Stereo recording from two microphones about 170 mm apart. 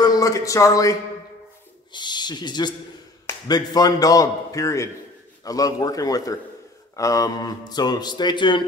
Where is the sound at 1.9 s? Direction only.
25° left (ahead or behind).